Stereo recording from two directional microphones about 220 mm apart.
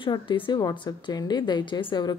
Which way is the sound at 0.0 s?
20° left (ahead or behind).